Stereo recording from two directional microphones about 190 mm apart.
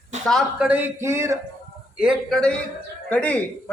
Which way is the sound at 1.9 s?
Centre (ahead or behind).